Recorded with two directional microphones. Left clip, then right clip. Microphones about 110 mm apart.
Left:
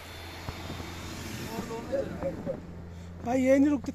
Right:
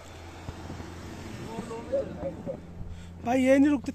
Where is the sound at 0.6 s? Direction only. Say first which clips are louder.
Left 2 dB; 90° left.